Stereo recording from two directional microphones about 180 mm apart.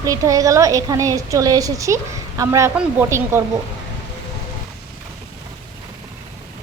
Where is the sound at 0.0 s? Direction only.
20° right (ahead or behind).